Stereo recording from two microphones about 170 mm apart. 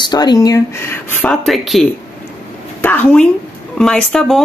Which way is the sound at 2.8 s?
10° left (ahead or behind).